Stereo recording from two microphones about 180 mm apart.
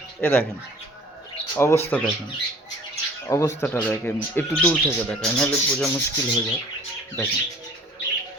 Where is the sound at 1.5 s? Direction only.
15° left (ahead or behind).